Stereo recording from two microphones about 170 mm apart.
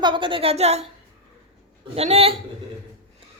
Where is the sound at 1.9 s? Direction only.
35° right (ahead or behind).